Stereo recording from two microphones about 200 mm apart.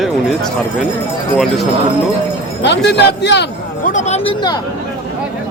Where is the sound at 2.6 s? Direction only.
60° left (ahead or behind).